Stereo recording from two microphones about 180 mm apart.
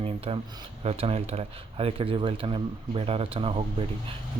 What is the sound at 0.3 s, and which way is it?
Speech, 35° right (ahead or behind).